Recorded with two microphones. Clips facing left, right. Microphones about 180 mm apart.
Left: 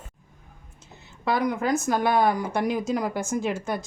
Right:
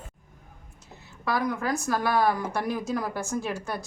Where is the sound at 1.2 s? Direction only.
20° left (ahead or behind).